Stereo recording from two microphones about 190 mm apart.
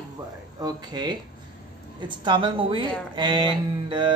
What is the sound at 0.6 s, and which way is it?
A woman's voice, 20° right (ahead or behind).